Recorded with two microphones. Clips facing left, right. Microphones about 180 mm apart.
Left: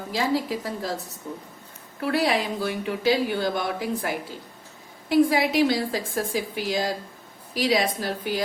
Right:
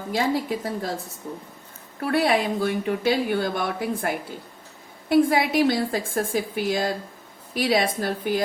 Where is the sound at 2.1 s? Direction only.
50° right (ahead or behind).